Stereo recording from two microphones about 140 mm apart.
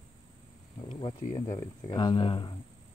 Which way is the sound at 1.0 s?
30° left (ahead or behind).